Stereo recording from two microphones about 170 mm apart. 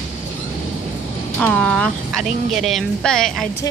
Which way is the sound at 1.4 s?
5° left (ahead or behind).